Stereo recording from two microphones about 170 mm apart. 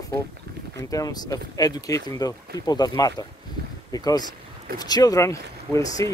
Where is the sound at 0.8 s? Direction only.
20° left (ahead or behind).